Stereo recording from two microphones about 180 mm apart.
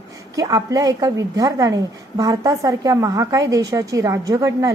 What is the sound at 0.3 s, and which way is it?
A woman's voice, 20° right (ahead or behind).